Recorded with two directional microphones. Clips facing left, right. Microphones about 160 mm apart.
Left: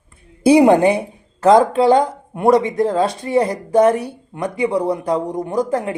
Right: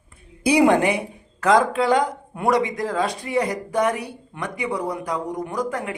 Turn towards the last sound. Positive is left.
turn(degrees=25)  # may be behind; listen again after turning